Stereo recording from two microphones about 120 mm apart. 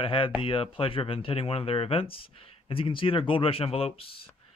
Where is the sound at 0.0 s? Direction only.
45° left (ahead or behind).